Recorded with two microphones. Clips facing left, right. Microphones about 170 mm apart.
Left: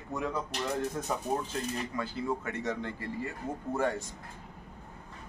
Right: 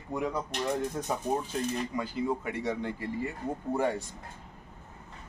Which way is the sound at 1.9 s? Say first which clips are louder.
Right 2 dB; 15° right (ahead or behind).